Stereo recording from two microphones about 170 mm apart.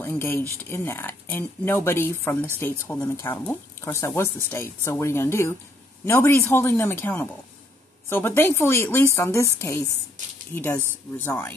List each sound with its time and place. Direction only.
0.0 s speech: 15° left (ahead or behind)